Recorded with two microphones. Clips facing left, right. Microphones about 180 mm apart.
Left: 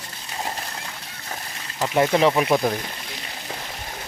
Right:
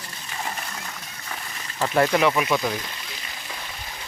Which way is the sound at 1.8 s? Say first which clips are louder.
Left 1 dB; 15° left (ahead or behind).